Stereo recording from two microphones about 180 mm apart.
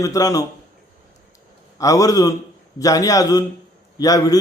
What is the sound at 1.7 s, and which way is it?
A man's voice, 20° left (ahead or behind).